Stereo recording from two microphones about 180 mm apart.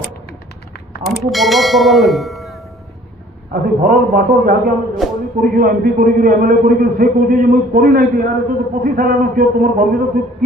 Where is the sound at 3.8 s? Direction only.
55° right (ahead or behind).